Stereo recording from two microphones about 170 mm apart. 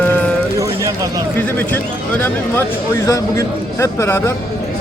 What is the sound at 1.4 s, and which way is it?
Speech, 10° left (ahead or behind).